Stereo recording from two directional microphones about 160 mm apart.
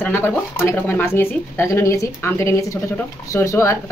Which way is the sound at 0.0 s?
15° left (ahead or behind).